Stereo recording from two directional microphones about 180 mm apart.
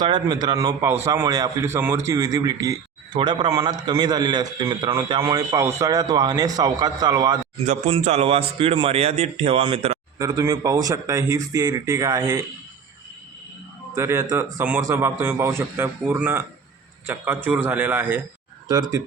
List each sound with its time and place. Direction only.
0.0 s speech: 25° right (ahead or behind)
7.9 s a man's voice: 35° right (ahead or behind)
10.2 s speech: 20° right (ahead or behind)
13.9 s a man's voice: 15° right (ahead or behind)